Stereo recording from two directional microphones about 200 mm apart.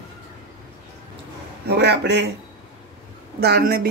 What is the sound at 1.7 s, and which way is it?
Speech, 55° right (ahead or behind).